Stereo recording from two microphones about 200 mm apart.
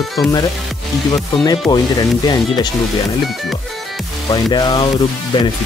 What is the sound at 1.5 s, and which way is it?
Speech, 20° left (ahead or behind).